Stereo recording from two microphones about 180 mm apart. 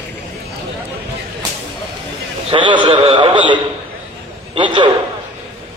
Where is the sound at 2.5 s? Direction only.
25° right (ahead or behind).